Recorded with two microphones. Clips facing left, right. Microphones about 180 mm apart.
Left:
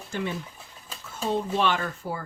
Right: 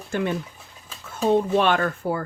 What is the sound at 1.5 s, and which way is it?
Speech, 60° right (ahead or behind).